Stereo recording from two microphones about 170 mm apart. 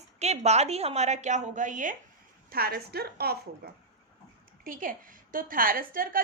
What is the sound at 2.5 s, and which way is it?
A woman's voice, 65° right (ahead or behind).